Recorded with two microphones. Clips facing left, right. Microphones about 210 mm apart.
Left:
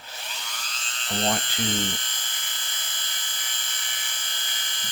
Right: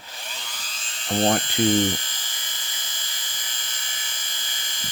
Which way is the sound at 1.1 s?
50° right (ahead or behind).